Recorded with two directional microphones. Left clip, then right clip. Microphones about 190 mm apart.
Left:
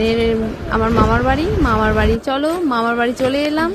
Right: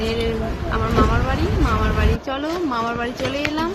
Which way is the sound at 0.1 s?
45° left (ahead or behind).